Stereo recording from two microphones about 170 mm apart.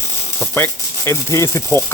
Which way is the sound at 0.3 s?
15° left (ahead or behind).